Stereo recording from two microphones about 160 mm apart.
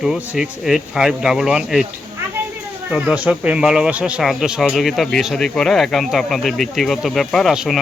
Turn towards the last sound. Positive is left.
turn(degrees=0)  # may be behind; listen again after turning